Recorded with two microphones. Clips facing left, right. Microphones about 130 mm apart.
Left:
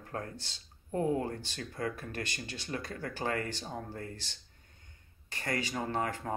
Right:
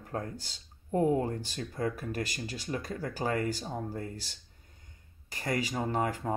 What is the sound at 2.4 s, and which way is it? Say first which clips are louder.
Speech: right 5 dB; 40° right (ahead or behind).